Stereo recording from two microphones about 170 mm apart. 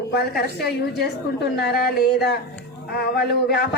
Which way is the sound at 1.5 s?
65° left (ahead or behind).